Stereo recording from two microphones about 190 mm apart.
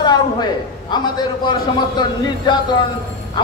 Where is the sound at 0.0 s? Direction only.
20° left (ahead or behind).